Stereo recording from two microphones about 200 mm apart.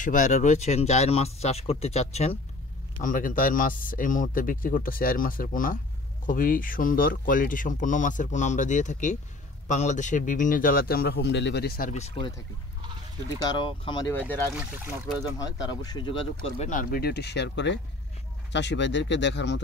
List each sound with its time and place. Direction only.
0.0 s speech: 40° left (ahead or behind)
13.5 s speech: 25° left (ahead or behind)
14.5 s speech: 10° right (ahead or behind)
15.3 s speech: 20° left (ahead or behind); by 19.6 s 60° left (ahead or behind)